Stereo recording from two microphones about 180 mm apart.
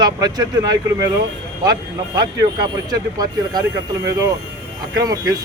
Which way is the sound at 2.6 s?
20° right (ahead or behind).